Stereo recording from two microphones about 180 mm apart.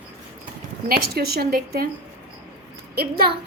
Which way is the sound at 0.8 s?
60° right (ahead or behind).